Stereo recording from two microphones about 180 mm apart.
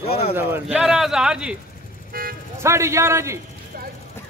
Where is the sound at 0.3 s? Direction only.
10° right (ahead or behind).